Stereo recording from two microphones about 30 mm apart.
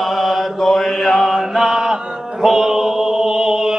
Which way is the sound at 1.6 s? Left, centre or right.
Right.